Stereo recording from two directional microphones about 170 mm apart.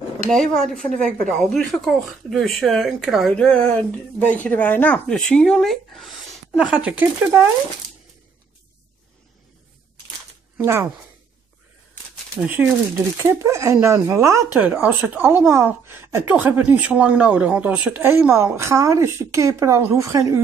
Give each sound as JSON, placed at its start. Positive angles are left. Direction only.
{"t": 0.3, "sound": "speech", "side_deg": 5}
{"t": 10.6, "sound": "speech", "side_deg": -15}
{"t": 12.4, "sound": "speech", "side_deg": -10}